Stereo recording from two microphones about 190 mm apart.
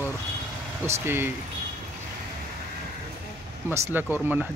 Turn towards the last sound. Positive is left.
turn(degrees=-10)  # may be behind; listen again after turning